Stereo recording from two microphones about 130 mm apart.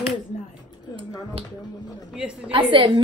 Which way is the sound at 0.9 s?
45° right (ahead or behind).